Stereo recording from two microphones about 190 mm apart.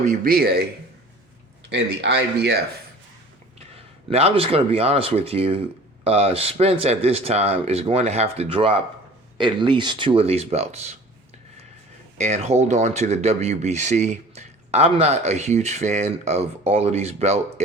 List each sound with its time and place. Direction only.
0.0 s a man's voice: 50° right (ahead or behind)
1.7 s a man's voice: 65° right (ahead or behind)
4.1 s speech: 30° right (ahead or behind)
12.1 s speech: 40° right (ahead or behind)